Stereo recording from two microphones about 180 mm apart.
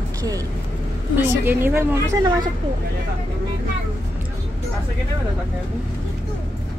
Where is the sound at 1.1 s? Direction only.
10° right (ahead or behind).